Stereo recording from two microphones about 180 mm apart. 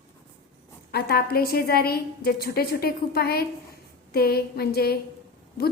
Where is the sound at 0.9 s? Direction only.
60° left (ahead or behind).